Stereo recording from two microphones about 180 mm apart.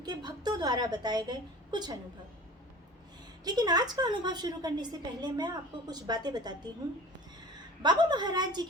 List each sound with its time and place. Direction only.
0.0 s a woman's voice: 20° right (ahead or behind)
3.4 s a woman's voice: 20° right (ahead or behind)
7.8 s a woman's voice: 25° right (ahead or behind)